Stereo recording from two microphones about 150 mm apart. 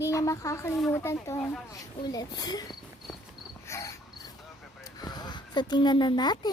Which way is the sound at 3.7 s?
20° left (ahead or behind).